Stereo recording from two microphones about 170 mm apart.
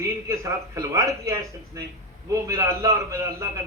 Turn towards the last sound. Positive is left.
turn(degrees=-20)  # may be behind; listen again after turning